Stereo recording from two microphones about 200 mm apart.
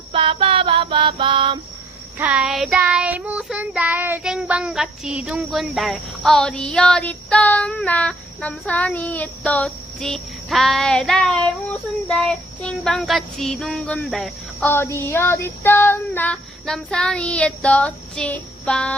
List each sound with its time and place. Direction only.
0.1 s music: 25° right (ahead or behind)
2.1 s child singing: 5° right (ahead or behind)